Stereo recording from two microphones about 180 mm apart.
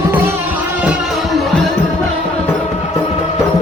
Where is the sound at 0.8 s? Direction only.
5° right (ahead or behind).